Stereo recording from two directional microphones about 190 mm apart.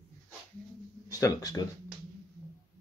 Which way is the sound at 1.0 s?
20° left (ahead or behind).